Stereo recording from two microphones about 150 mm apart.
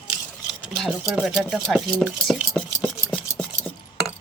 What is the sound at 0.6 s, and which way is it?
Speech, 5° right (ahead or behind).